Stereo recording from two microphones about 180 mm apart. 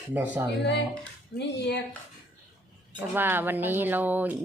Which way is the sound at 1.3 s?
65° left (ahead or behind).